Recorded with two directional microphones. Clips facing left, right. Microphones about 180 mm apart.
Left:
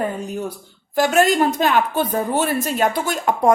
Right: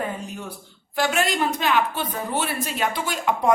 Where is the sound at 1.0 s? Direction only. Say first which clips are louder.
Left 7 dB; 45° left (ahead or behind).